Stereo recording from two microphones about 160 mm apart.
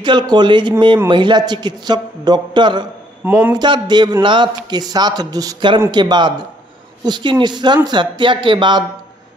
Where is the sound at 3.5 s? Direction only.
30° right (ahead or behind).